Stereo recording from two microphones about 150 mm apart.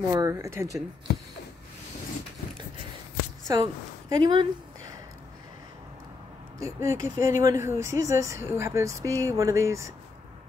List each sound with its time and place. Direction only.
0.1 s speech: 20° right (ahead or behind)
3.5 s speech: 25° right (ahead or behind)
6.6 s speech: 20° right (ahead or behind)